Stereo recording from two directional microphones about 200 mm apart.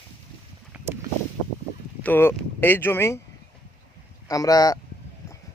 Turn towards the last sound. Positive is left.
turn(degrees=20)  # may be behind; listen again after turning